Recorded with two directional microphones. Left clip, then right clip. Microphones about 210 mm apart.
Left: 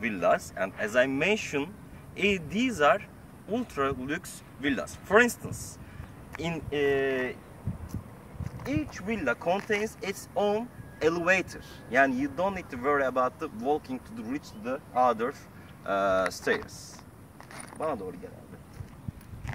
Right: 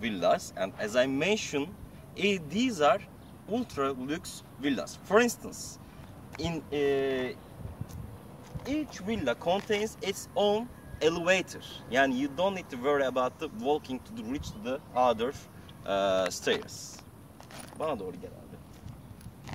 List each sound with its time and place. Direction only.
0.0 s speech: centre (ahead or behind)
8.6 s speech: centre (ahead or behind); by 16.6 s 15° right (ahead or behind)
17.7 s speech: 15° right (ahead or behind)